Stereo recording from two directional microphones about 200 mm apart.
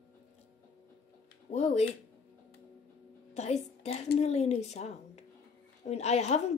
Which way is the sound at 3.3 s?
35° left (ahead or behind).